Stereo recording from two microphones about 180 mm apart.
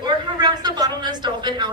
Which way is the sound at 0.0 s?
25° right (ahead or behind).